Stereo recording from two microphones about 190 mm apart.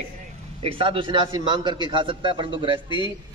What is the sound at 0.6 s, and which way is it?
A man's voice, 25° right (ahead or behind).